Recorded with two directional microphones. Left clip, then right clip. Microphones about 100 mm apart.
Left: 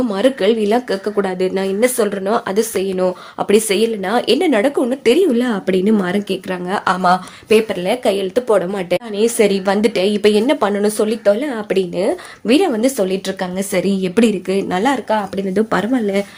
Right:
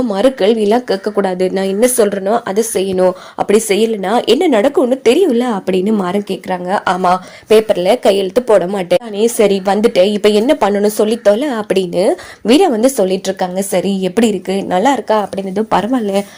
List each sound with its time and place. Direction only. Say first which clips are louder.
0.1 s a woman's voice: right 4 dB; 35° right (ahead or behind)
2.2 s a woman's voice: right 3 dB; 15° right (ahead or behind)
2.8 s a woman's voice: right 5 dB; 70° right (ahead or behind)
3.3 s a woman's voice: left 1 dB; 20° right (ahead or behind)
3.8 s a woman's voice: right 3 dB; 45° right (ahead or behind); by 7.2 s 25° right (ahead or behind)
7.4 s speech: right 6 dB; 55° right (ahead or behind)
9.1 s a woman's voice: even; 30° right (ahead or behind)
11.3 s a woman's voice: right 3 dB; 75° right (ahead or behind)
12.5 s a woman's voice: right 4 dB; 45° right (ahead or behind)
12.7 s a woman's voice: right 4 dB; 35° right (ahead or behind)